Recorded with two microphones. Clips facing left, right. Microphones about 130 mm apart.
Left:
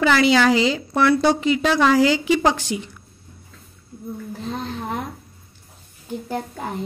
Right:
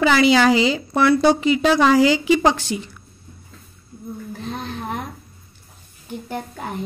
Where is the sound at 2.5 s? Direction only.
15° left (ahead or behind).